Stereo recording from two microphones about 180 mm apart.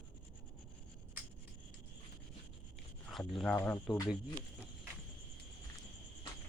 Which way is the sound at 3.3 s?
Centre (ahead or behind).